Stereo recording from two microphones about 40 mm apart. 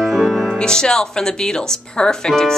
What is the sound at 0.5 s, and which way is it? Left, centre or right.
Speech, left.